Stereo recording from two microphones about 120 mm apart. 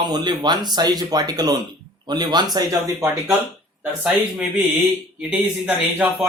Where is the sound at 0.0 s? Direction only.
40° right (ahead or behind).